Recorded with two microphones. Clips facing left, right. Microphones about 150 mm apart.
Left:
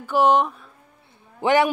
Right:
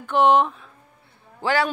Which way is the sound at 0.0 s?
Centre (ahead or behind).